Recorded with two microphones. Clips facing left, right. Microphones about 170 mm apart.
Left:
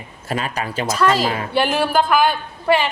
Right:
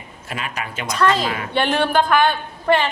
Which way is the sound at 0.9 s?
5° left (ahead or behind).